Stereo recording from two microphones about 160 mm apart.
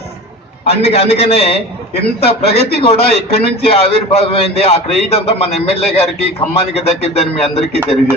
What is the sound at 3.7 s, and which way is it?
A man's voice, 40° left (ahead or behind).